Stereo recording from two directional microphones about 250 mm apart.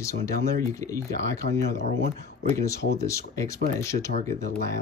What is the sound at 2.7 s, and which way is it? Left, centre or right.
Speech, left.